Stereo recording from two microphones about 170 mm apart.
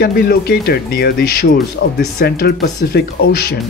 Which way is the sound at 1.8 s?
75° left (ahead or behind).